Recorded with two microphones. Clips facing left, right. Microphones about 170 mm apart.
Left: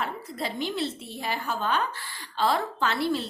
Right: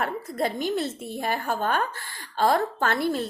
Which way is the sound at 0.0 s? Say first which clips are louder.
Right 5 dB; 50° right (ahead or behind).